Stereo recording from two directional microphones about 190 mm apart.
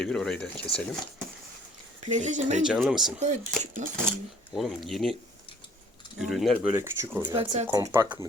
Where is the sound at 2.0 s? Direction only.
40° right (ahead or behind).